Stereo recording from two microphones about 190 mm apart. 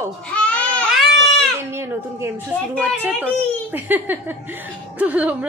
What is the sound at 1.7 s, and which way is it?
A woman's voice, 15° right (ahead or behind).